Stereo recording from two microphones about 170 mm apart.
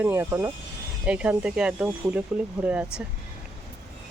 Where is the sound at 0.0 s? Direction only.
15° right (ahead or behind).